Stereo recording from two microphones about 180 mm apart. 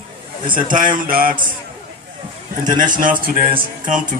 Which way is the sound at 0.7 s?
45° right (ahead or behind).